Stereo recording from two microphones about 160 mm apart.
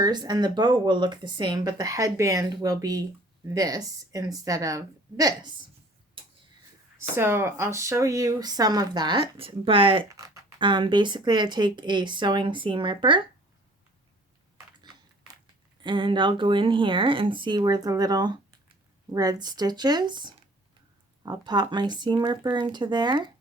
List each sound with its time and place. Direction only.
0.0 s speech: 25° right (ahead or behind)
7.2 s speech: 15° right (ahead or behind); by 13.2 s 30° right (ahead or behind)
15.8 s speech: 30° right (ahead or behind)